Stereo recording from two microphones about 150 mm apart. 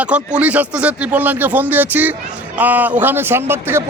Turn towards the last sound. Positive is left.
turn(degrees=-15)  # may be behind; listen again after turning